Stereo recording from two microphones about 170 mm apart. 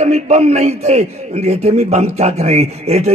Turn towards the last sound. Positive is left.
turn(degrees=-40)  # may be behind; listen again after turning